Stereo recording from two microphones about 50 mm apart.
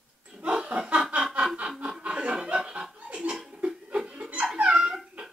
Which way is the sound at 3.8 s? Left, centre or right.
Centre.